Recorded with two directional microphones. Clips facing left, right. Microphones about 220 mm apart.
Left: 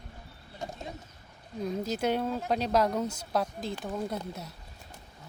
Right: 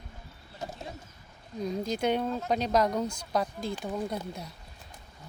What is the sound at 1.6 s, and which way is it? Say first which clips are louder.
Speech: right 1 dB; 5° left (ahead or behind).